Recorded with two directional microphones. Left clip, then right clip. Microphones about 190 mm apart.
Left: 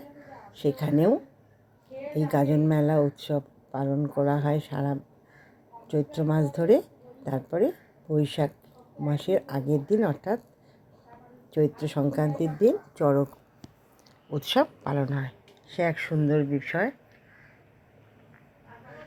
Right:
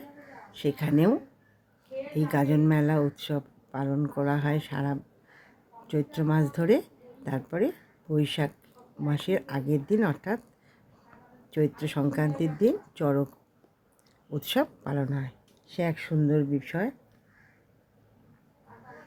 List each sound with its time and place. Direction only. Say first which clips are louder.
0.5 s speech: left 1 dB; 10° right (ahead or behind)
2.1 s speech: left 2 dB; 10° right (ahead or behind)
11.5 s speech: left 3 dB; 10° right (ahead or behind)
14.3 s speech: left 4 dB; 20° right (ahead or behind)